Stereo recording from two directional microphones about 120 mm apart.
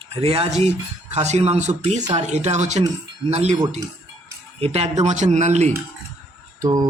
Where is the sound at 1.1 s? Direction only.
70° right (ahead or behind).